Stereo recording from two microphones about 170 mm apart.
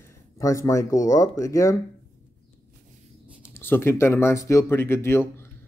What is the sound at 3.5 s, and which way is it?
Speech, 15° left (ahead or behind).